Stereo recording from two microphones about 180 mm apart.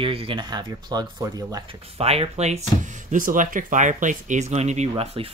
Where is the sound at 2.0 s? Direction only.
35° right (ahead or behind).